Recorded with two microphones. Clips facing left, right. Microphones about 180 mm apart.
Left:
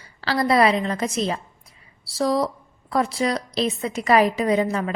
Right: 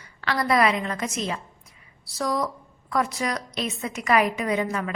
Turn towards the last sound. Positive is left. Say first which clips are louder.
# left 5 dB
turn(degrees=30)  # may be behind; listen again after turning